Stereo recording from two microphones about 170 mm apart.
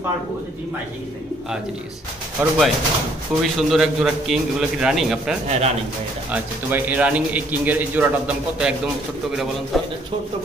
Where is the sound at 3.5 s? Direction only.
Centre (ahead or behind).